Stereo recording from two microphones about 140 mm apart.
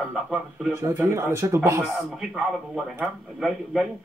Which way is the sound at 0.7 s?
20° right (ahead or behind).